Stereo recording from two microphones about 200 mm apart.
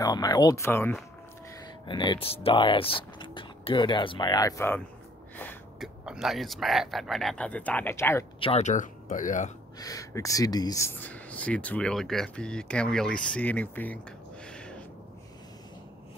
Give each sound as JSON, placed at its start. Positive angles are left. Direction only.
{"t": 0.0, "sound": "speech", "side_deg": 20}
{"t": 5.3, "sound": "gasp", "side_deg": 10}
{"t": 6.0, "sound": "speech", "side_deg": 0}
{"t": 8.4, "sound": "speech", "side_deg": 30}
{"t": 9.8, "sound": "speech", "side_deg": 15}
{"t": 14.4, "sound": "a sound", "side_deg": 5}